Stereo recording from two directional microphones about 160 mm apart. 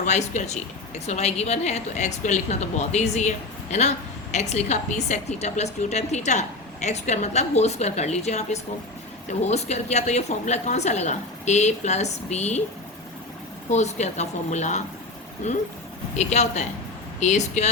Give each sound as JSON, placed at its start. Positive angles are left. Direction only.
{"t": 0.0, "sound": "a woman's voice", "side_deg": 45}
{"t": 13.7, "sound": "a woman's voice", "side_deg": 45}